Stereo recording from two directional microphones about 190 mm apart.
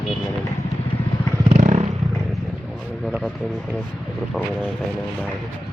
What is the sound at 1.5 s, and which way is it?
Vehicle, 35° right (ahead or behind).